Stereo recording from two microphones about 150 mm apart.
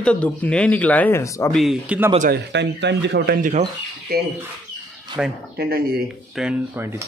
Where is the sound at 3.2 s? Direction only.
65° right (ahead or behind).